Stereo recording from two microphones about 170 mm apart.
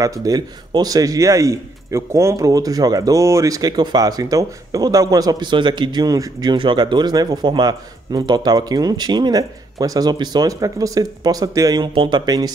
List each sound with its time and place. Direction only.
0.0 s a man's voice: 20° right (ahead or behind)